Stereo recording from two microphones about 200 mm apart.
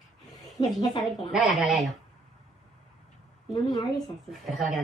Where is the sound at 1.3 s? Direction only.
Centre (ahead or behind).